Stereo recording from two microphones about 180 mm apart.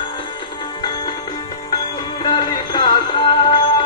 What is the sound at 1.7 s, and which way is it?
Music, 25° left (ahead or behind).